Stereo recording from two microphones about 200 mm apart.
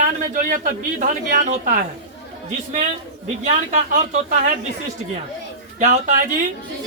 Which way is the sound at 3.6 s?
35° right (ahead or behind).